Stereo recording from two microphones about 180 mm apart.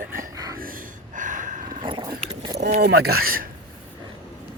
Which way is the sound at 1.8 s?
25° right (ahead or behind).